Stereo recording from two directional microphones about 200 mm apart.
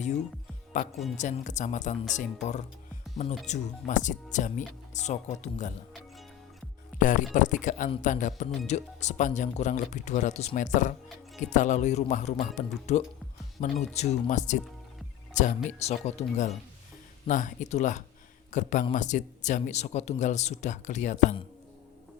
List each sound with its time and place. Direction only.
1.1 s speech: 40° left (ahead or behind)
7.0 s speech: 40° left (ahead or behind)